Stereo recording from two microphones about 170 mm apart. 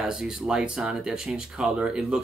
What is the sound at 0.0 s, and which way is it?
Speech, 5° right (ahead or behind).